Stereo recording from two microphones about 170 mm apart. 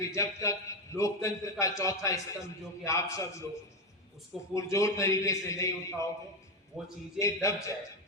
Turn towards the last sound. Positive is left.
turn(degrees=20)  # may be behind; listen again after turning